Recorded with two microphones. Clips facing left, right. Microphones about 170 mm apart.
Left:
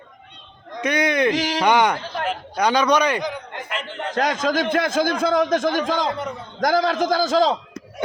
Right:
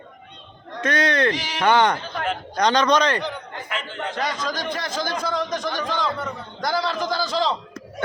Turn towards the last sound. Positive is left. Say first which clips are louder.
# left 5 dB
turn(degrees=45)  # may be behind; listen again after turning